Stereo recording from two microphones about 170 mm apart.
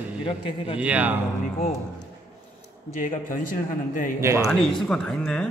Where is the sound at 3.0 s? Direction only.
50° left (ahead or behind).